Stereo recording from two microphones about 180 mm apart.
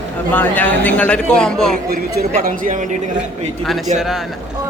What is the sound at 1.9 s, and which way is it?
A woman's voice, 60° right (ahead or behind).